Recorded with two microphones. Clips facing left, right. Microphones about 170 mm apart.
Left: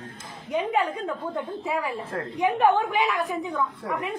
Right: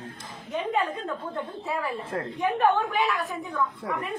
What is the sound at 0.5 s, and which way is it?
A woman's voice, 10° left (ahead or behind).